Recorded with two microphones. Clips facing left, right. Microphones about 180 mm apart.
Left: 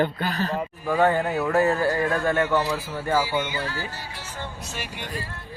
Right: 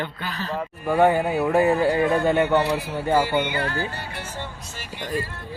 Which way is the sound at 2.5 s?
65° right (ahead or behind).